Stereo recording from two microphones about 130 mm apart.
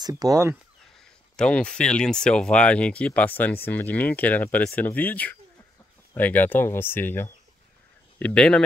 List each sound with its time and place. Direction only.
0.0 s speech: 30° right (ahead or behind)
0.9 s speech: 5° left (ahead or behind)